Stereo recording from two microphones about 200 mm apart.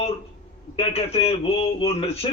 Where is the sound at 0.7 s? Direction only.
30° left (ahead or behind).